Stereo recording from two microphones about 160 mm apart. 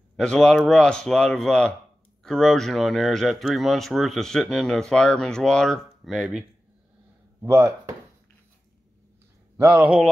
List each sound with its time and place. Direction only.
0.1 s speech: 5° left (ahead or behind)
7.4 s speech: 15° right (ahead or behind)
9.6 s speech: 10° right (ahead or behind)